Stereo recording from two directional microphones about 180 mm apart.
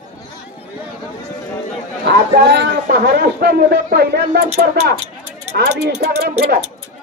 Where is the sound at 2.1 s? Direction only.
70° right (ahead or behind).